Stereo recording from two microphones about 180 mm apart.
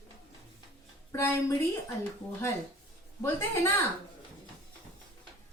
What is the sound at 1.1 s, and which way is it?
Speech, 15° left (ahead or behind).